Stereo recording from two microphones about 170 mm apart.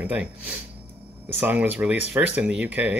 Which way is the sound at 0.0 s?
10° right (ahead or behind).